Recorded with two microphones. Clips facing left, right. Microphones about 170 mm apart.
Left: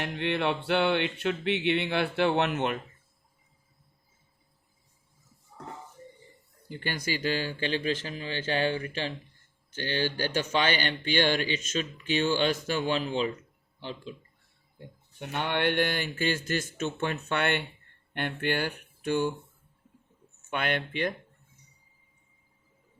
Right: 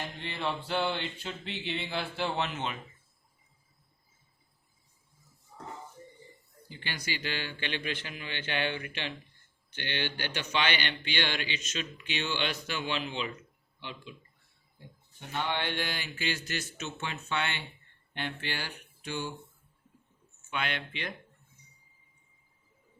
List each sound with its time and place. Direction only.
0.0 s a sound: 65° left (ahead or behind)
6.7 s speech: 50° left (ahead or behind)
15.2 s speech: 60° left (ahead or behind)
20.5 s speech: 50° left (ahead or behind)